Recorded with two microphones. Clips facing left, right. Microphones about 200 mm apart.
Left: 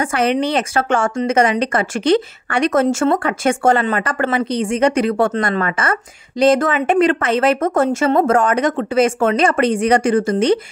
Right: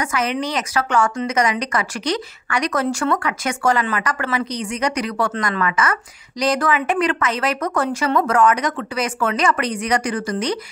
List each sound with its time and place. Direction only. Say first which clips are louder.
0.0 s a woman's voice: left 5 dB; 30° left (ahead or behind)